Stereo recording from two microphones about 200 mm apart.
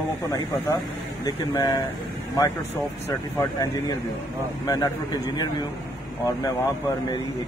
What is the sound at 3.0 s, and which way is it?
Speech, 20° left (ahead or behind).